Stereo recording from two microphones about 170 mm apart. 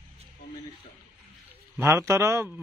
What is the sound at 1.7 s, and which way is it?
Speech, 15° right (ahead or behind).